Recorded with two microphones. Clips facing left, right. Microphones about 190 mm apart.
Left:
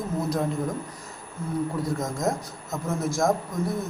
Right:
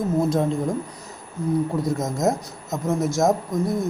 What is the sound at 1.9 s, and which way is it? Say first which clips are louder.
Speech: right 4 dB; 20° right (ahead or behind).